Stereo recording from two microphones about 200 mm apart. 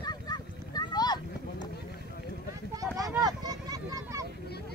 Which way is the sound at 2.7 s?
15° right (ahead or behind).